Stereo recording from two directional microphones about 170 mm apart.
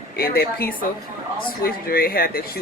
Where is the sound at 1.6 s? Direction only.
60° left (ahead or behind).